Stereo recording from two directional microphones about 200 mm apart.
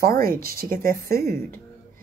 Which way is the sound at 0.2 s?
50° right (ahead or behind).